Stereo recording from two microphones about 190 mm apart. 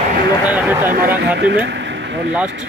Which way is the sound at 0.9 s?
50° right (ahead or behind).